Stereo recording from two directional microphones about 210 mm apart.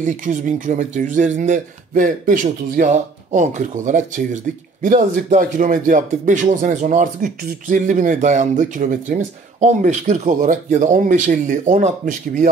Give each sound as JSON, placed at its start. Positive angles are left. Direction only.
{"t": 0.0, "sound": "speech", "side_deg": -35}